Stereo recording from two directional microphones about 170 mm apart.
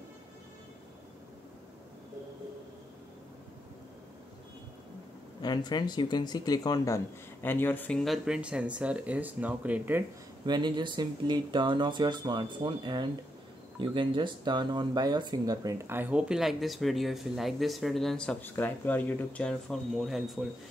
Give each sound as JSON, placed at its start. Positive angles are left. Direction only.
{"t": 5.4, "sound": "speech", "side_deg": 25}
{"t": 10.4, "sound": "speech", "side_deg": -25}